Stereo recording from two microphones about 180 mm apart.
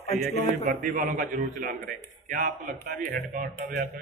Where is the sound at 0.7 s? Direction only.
50° right (ahead or behind).